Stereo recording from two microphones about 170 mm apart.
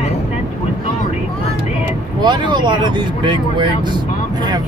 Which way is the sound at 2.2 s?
25° right (ahead or behind).